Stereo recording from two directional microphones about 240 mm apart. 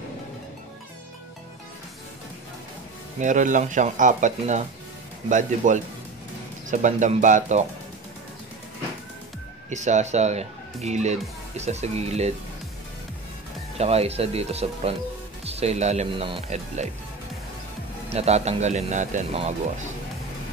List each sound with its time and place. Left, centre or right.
3.2 s speech: right
9.7 s speech: right
13.7 s speech: right
18.1 s speech: right